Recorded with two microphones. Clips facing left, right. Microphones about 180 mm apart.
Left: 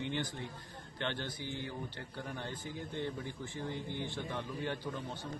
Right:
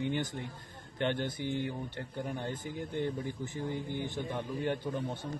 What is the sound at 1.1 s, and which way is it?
Speech, 50° right (ahead or behind).